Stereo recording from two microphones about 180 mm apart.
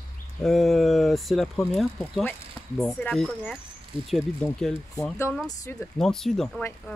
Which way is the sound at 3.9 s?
30° right (ahead or behind).